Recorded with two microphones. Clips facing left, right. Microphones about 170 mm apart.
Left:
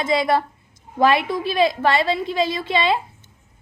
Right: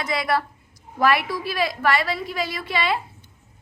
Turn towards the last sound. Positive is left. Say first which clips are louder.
# left 4 dB
turn(degrees=25)  # may be behind; listen again after turning